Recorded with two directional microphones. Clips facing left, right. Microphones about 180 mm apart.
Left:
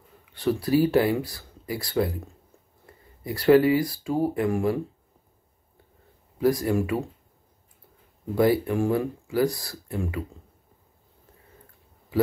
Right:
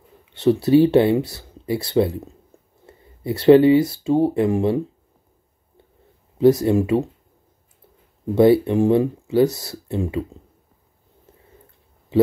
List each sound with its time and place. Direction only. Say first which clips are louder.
0.2 s speech: right 8 dB; 25° right (ahead or behind)
6.3 s speech: right 7 dB; 25° right (ahead or behind)
8.4 s speech: right 7 dB; 25° right (ahead or behind)
12.1 s speech: right 7 dB; 25° right (ahead or behind)